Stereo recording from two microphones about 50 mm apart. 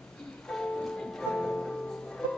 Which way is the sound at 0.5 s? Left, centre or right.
Centre.